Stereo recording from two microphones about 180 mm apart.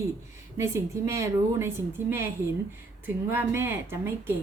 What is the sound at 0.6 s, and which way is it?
A woman's voice, 15° right (ahead or behind).